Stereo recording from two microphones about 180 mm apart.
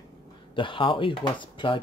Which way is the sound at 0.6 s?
30° left (ahead or behind).